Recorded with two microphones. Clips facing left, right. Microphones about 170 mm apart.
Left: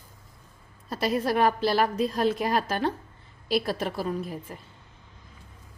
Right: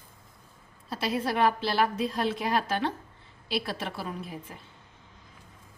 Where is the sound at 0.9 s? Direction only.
45° left (ahead or behind).